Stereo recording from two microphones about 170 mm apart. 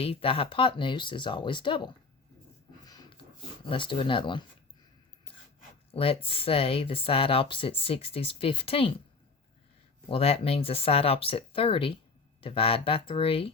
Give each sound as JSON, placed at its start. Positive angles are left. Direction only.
{"t": 0.0, "sound": "speech", "side_deg": 35}
{"t": 2.8, "sound": "a sound", "side_deg": 25}
{"t": 3.7, "sound": "speech", "side_deg": 30}
{"t": 5.9, "sound": "speech", "side_deg": 35}
{"t": 10.1, "sound": "speech", "side_deg": 35}